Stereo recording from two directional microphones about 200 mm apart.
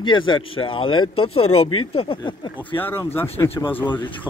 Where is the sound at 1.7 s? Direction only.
90° left.